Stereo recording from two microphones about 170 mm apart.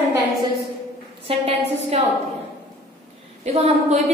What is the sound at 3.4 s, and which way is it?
Speech, 40° right (ahead or behind).